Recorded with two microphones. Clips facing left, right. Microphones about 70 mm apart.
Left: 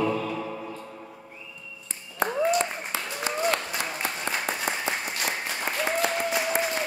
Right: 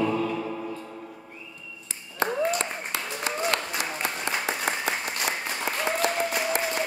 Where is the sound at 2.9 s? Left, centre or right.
Right.